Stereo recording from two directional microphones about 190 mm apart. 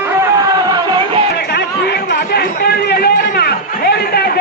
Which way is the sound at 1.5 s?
60° left (ahead or behind).